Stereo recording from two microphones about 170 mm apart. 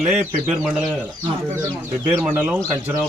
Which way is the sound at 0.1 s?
5° right (ahead or behind).